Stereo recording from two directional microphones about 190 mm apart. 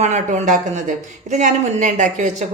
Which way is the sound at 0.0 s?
35° right (ahead or behind).